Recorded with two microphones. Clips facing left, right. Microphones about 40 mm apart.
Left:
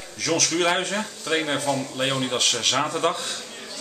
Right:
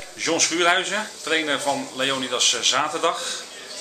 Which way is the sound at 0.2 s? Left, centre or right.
Right.